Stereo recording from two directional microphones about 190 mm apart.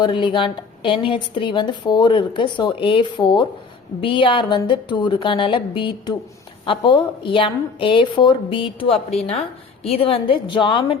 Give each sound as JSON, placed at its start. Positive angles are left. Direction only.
{"t": 0.0, "sound": "a woman's voice", "side_deg": 25}